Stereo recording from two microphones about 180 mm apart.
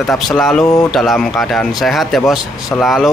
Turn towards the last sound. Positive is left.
turn(degrees=0)  # may be behind; listen again after turning